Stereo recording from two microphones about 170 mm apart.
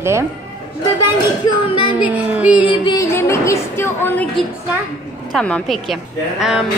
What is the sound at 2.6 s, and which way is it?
A woman's voice, 30° left (ahead or behind).